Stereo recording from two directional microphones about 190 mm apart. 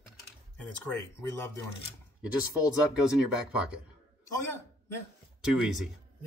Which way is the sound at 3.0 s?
5° right (ahead or behind).